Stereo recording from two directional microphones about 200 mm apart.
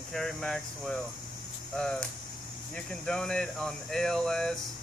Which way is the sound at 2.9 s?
5° left (ahead or behind).